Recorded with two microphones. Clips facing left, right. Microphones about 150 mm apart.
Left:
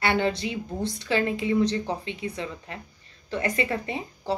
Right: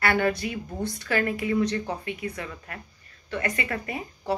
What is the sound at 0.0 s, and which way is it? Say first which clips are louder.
A woman's voice: even; 25° left (ahead or behind).